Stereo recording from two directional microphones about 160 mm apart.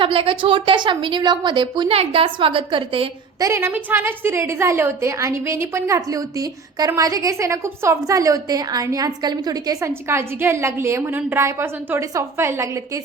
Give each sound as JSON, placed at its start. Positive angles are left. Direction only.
{"t": 0.0, "sound": "a woman's voice", "side_deg": -35}
{"t": 3.4, "sound": "a woman's voice", "side_deg": -15}